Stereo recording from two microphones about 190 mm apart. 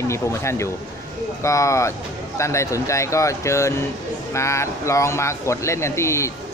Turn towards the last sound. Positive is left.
turn(degrees=15)  # may be behind; listen again after turning